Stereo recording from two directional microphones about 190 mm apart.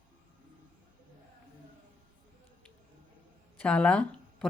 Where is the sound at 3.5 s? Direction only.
5° left (ahead or behind).